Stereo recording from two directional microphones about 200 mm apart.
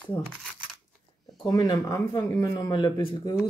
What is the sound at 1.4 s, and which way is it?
Speech, 20° left (ahead or behind).